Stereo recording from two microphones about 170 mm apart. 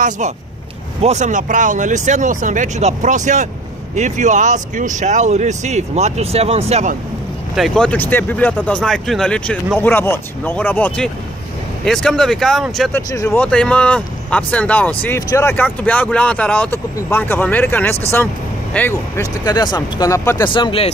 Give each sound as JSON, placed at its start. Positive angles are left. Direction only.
{"t": 1.0, "sound": "speech", "side_deg": -45}
{"t": 7.5, "sound": "speech", "side_deg": 0}
{"t": 12.9, "sound": "speech", "side_deg": 15}